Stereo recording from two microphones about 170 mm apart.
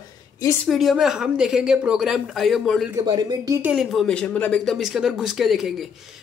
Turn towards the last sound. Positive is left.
turn(degrees=0)  # may be behind; listen again after turning